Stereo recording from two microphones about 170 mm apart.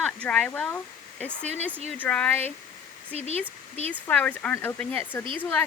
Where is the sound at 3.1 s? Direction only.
35° right (ahead or behind).